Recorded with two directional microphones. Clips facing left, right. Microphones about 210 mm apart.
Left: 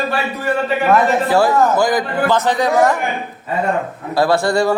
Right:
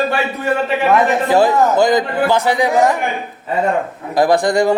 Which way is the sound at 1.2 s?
20° right (ahead or behind).